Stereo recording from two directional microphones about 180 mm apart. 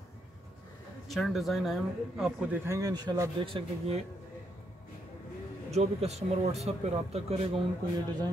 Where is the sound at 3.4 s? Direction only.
30° right (ahead or behind).